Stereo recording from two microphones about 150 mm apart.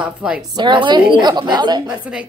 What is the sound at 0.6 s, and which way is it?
A woman's voice, 30° right (ahead or behind).